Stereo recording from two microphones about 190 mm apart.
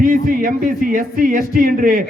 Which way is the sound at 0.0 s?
45° right (ahead or behind).